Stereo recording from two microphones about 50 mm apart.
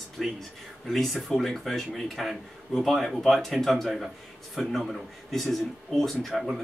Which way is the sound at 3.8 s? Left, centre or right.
Centre.